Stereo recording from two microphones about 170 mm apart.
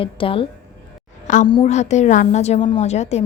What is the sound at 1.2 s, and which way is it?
A woman's voice, 45° left (ahead or behind).